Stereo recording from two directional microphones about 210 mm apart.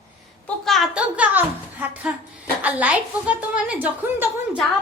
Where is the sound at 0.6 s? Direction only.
Centre (ahead or behind).